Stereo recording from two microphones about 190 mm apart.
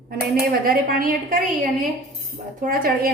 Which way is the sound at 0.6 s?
50° right (ahead or behind).